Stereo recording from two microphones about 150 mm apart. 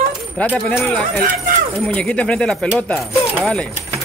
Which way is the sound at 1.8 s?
10° left (ahead or behind).